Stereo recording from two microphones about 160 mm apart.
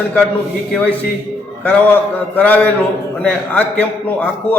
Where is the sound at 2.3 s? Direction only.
10° left (ahead or behind).